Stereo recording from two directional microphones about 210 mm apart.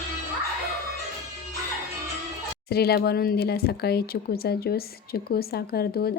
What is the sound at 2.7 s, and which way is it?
Speech, 50° left (ahead or behind).